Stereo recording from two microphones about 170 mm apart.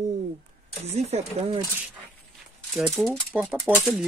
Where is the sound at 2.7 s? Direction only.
Centre (ahead or behind).